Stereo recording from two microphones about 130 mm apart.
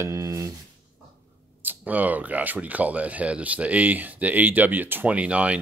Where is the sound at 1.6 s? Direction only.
15° right (ahead or behind).